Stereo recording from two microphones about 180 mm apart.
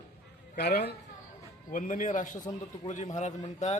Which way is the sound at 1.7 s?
45° left (ahead or behind).